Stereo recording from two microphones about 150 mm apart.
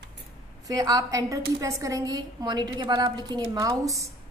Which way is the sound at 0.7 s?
25° right (ahead or behind).